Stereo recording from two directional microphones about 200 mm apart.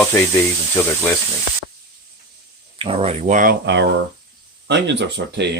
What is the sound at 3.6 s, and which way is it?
Speech, 65° right (ahead or behind).